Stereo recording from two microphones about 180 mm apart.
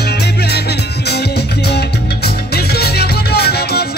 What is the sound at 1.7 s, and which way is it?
Music, 65° left (ahead or behind).